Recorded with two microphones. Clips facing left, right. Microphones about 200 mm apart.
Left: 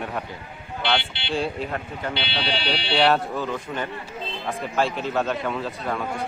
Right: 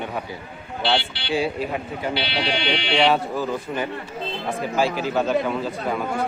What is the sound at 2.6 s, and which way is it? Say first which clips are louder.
Speech: right 2 dB; 35° left (ahead or behind).